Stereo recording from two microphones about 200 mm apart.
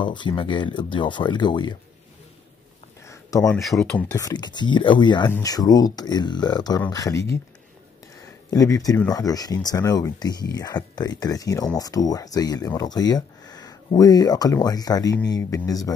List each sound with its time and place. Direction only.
0.0 s speech: 25° left (ahead or behind)
3.1 s a sound: 15° left (ahead or behind)
3.5 s speech: centre (ahead or behind)
4.2 s speech: 20° left (ahead or behind)
8.5 s speech: 15° left (ahead or behind)